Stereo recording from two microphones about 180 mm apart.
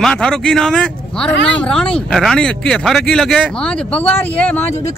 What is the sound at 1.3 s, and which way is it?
Speech, 90° left.